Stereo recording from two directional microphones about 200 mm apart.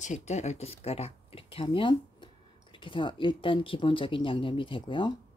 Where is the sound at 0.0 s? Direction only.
35° left (ahead or behind).